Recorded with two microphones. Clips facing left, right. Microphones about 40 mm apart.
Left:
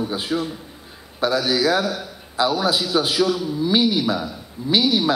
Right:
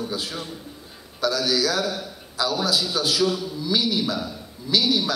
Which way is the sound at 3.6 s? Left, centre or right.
Left.